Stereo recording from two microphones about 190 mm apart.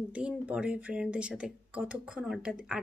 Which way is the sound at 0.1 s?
5° right (ahead or behind).